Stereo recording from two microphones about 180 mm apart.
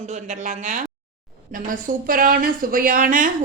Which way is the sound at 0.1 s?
40° right (ahead or behind).